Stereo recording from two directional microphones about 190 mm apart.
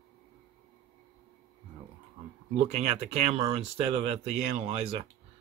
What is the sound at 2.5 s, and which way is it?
Speech, 35° right (ahead or behind).